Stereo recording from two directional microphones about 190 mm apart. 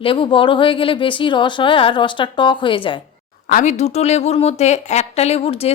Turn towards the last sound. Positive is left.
turn(degrees=30)  # may be behind; listen again after turning